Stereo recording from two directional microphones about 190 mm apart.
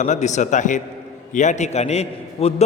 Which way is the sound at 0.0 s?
40° left (ahead or behind).